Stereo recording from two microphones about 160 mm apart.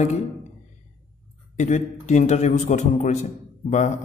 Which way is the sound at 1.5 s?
45° left (ahead or behind).